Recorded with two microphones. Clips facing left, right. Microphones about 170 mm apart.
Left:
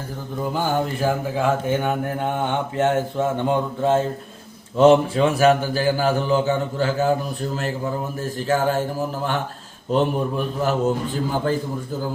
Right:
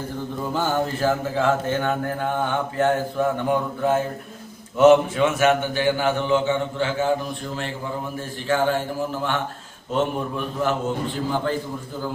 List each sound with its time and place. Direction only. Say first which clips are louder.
0.5 s mantra: even; 10° left (ahead or behind)
4.8 s a man's voice: even; 30° left (ahead or behind)
8.4 s a man's voice: even; 40° left (ahead or behind)
9.9 s a man's voice: left 3 dB; 35° left (ahead or behind)